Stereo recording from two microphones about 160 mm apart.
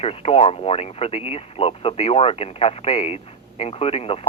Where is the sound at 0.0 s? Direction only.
35° left (ahead or behind).